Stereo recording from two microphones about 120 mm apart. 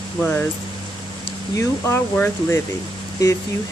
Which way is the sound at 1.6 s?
20° left (ahead or behind).